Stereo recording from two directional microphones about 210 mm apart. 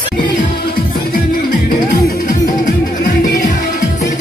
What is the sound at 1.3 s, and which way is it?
Music, 40° left (ahead or behind).